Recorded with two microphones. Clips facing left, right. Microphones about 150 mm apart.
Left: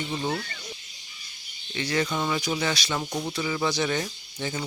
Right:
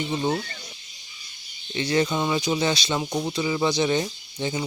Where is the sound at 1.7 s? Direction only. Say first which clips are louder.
Right 4 dB; 25° right (ahead or behind).